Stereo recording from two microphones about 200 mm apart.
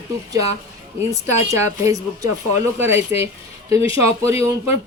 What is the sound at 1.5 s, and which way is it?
Speech, 15° right (ahead or behind).